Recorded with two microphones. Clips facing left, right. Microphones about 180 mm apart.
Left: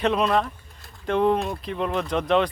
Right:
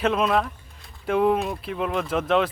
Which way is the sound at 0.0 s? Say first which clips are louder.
Even; centre (ahead or behind).